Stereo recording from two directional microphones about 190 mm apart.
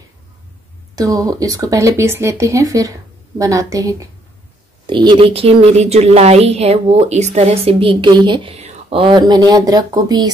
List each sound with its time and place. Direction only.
0.9 s a woman's voice: 20° right (ahead or behind)